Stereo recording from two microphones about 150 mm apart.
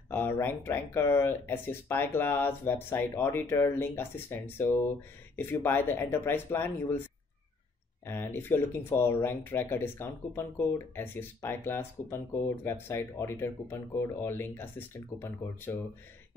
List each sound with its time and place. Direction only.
0.1 s speech: 15° left (ahead or behind)
8.0 s speech: 15° left (ahead or behind)